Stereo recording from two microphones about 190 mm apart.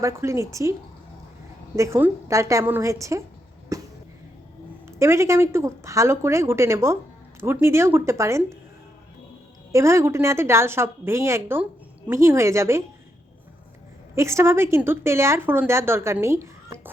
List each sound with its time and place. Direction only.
0.0 s speech: 15° right (ahead or behind)
1.7 s speech: 15° right (ahead or behind)
3.7 s a sound: 15° right (ahead or behind)
4.9 s speech: 15° right (ahead or behind)
9.7 s speech: 15° right (ahead or behind)
14.2 s speech: 15° right (ahead or behind)